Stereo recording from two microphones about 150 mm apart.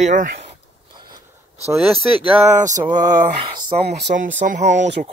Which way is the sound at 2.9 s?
30° right (ahead or behind).